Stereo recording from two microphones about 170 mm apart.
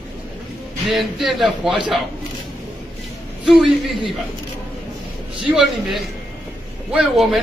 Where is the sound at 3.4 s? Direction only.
Centre (ahead or behind).